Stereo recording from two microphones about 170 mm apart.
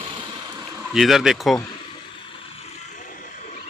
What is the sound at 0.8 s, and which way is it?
Speech, centre (ahead or behind).